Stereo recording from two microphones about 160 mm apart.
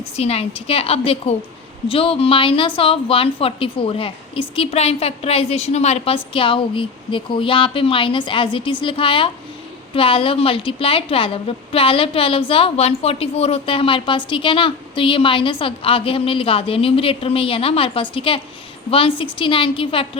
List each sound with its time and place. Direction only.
0.0 s a woman's voice: 40° left (ahead or behind)